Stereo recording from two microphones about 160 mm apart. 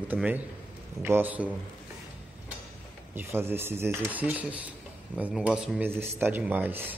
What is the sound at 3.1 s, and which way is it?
Speech, 15° right (ahead or behind).